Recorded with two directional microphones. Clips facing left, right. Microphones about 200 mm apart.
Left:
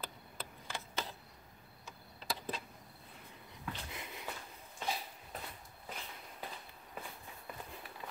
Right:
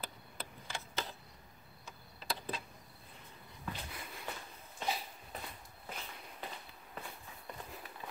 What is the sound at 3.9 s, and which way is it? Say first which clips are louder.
Sniff: left 1 dB; 20° left (ahead or behind).